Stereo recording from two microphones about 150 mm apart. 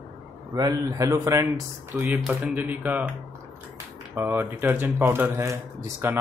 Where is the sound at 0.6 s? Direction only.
25° right (ahead or behind).